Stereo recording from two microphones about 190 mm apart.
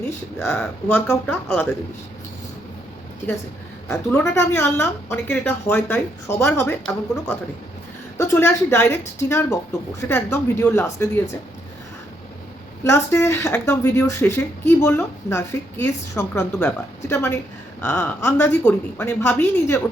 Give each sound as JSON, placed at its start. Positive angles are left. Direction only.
{"t": 0.3, "sound": "speech", "side_deg": 10}
{"t": 3.8, "sound": "speech", "side_deg": 10}
{"t": 8.2, "sound": "speech", "side_deg": 15}
{"t": 12.8, "sound": "speech", "side_deg": 15}